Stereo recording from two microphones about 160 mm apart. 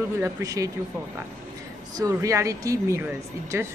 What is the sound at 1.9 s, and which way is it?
A woman's voice, 20° right (ahead or behind).